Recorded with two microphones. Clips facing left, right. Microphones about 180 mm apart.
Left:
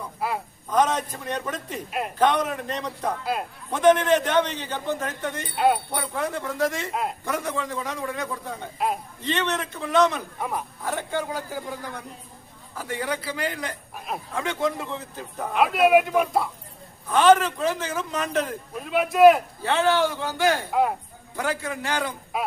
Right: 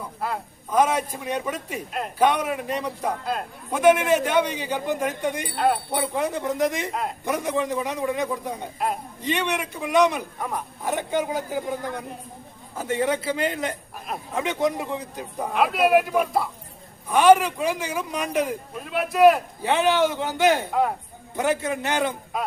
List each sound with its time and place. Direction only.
0.2 s a sound: 5° left (ahead or behind)
0.7 s speech: 10° right (ahead or behind)
5.5 s speech: 5° left (ahead or behind)
5.9 s a man's voice: 20° right (ahead or behind)
15.5 s speech: centre (ahead or behind)
17.1 s speech: 10° right (ahead or behind)
18.9 s speech: centre (ahead or behind)
19.6 s a man's voice: 15° right (ahead or behind)
22.3 s speech: 5° left (ahead or behind)